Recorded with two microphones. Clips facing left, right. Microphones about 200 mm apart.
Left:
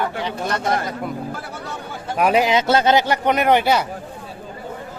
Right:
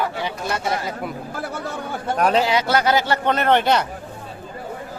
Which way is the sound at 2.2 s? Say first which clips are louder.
Left 2 dB; 10° left (ahead or behind).